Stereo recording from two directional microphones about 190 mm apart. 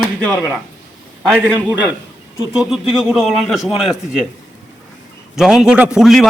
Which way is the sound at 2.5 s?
Centre (ahead or behind).